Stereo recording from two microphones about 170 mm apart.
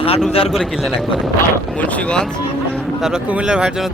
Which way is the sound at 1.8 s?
10° left (ahead or behind).